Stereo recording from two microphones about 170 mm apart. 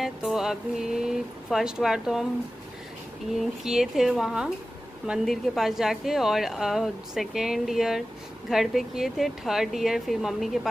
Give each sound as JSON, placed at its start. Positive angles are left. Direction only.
{"t": 0.0, "sound": "music", "side_deg": 0}
{"t": 1.0, "sound": "speech", "side_deg": -5}
{"t": 3.3, "sound": "speech", "side_deg": 0}